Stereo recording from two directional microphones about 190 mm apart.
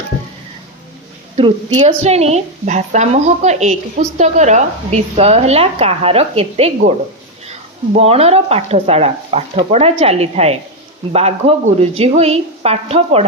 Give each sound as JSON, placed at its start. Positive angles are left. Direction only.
{"t": 1.4, "sound": "a woman's voice", "side_deg": -30}
{"t": 7.9, "sound": "a woman's voice", "side_deg": -30}